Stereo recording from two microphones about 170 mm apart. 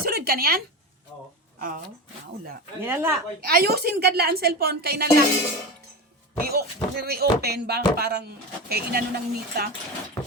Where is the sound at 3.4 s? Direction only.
60° right (ahead or behind).